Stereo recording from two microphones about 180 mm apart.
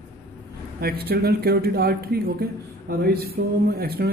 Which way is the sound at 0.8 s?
60° right (ahead or behind).